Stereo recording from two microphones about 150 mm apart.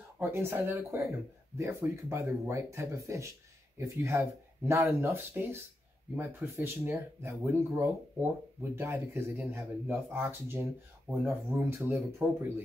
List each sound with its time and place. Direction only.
0.2 s speech: 15° right (ahead or behind)